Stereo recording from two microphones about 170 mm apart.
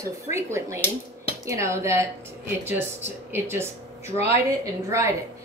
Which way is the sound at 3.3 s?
15° right (ahead or behind).